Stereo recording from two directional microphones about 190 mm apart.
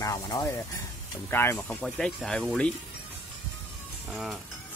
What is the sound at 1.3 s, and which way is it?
Speech, 15° left (ahead or behind).